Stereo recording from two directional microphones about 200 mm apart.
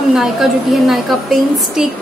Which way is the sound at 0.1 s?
Centre (ahead or behind).